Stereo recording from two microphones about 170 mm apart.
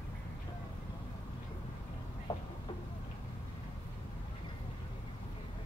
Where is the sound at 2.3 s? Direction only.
20° left (ahead or behind).